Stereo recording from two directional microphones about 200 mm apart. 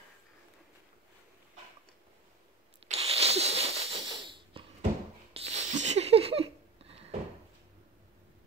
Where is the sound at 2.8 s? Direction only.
30° right (ahead or behind).